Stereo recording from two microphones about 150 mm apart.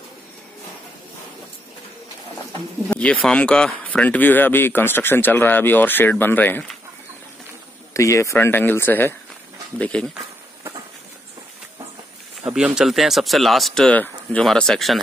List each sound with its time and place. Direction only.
2.9 s speech: 10° left (ahead or behind)
7.9 s speech: 20° left (ahead or behind)
12.4 s speech: 5° right (ahead or behind)